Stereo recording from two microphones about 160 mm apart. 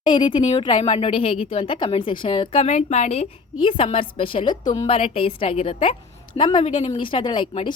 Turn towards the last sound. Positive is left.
turn(degrees=30)  # may be behind; listen again after turning